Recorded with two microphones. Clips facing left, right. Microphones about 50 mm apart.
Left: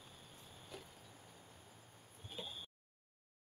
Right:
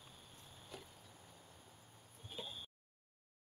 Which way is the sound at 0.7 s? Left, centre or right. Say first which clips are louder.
Even; centre.